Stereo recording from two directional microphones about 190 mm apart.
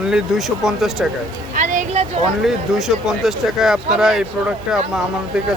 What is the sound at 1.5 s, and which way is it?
Vehicle, 40° right (ahead or behind).